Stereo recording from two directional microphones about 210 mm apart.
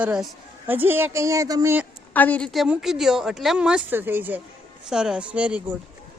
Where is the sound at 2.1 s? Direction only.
10° left (ahead or behind).